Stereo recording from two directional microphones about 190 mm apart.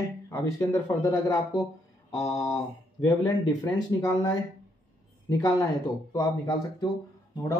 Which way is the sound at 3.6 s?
15° left (ahead or behind).